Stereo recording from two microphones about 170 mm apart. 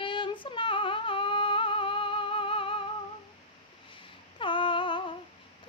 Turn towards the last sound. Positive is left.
turn(degrees=30)  # may be behind; listen again after turning